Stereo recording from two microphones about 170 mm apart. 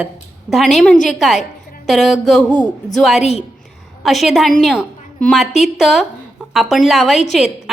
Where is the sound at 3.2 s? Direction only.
40° left (ahead or behind).